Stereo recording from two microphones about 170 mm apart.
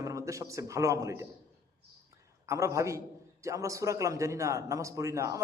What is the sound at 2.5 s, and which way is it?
A man's voice, 15° right (ahead or behind).